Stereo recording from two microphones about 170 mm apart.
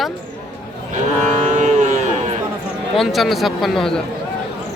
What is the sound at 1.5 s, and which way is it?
Cattle, 45° right (ahead or behind).